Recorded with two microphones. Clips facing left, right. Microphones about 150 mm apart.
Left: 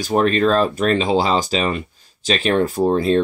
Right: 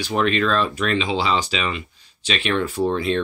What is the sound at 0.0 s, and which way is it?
Speech, 40° left (ahead or behind).